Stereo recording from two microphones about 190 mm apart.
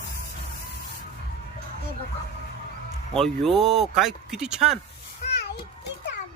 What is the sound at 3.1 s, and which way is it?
Speech, centre (ahead or behind).